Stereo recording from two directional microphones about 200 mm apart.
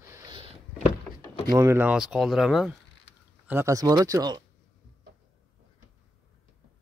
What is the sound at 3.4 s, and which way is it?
Speech, 10° right (ahead or behind).